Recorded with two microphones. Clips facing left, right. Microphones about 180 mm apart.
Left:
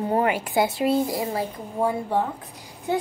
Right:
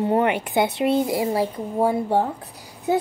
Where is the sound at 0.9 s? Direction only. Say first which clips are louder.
Right 3 dB; 25° right (ahead or behind).